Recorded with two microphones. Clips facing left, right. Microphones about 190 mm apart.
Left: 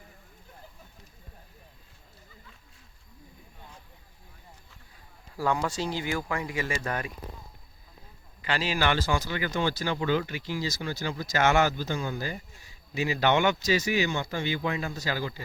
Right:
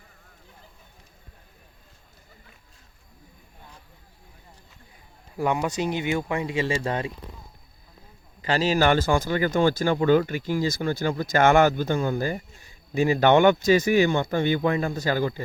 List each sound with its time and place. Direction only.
5.4 s speech: 20° right (ahead or behind)
8.4 s speech: 40° right (ahead or behind)